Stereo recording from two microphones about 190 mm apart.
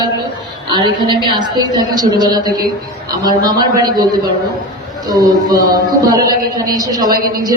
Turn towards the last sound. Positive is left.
turn(degrees=-50)  # may be behind; listen again after turning